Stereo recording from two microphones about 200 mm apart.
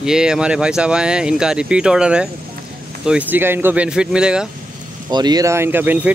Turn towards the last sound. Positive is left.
turn(degrees=-10)  # may be behind; listen again after turning